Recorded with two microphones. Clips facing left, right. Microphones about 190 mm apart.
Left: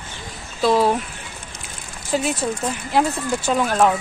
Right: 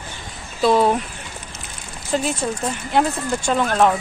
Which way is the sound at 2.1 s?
5° left (ahead or behind).